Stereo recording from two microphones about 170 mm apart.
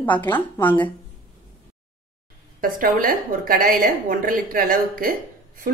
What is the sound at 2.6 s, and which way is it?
A woman's voice, 55° right (ahead or behind).